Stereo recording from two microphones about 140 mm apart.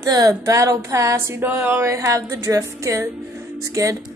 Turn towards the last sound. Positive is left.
turn(degrees=-25)  # may be behind; listen again after turning